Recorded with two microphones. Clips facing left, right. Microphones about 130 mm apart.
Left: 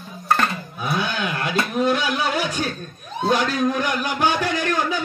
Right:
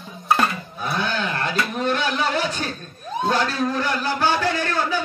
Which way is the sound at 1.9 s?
10° left (ahead or behind).